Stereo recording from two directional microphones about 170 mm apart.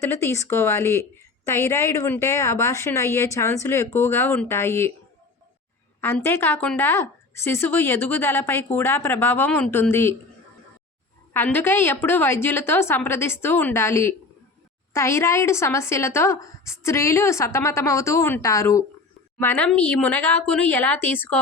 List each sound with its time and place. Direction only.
0.0 s a woman's voice: 15° left (ahead or behind)
6.0 s a woman's voice: 15° left (ahead or behind)
11.3 s a woman's voice: 10° left (ahead or behind)